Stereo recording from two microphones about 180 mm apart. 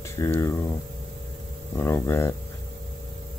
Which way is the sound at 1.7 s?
15° left (ahead or behind).